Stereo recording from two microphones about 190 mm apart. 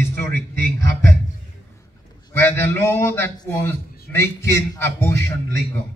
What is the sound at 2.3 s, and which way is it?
A man's voice, 10° left (ahead or behind).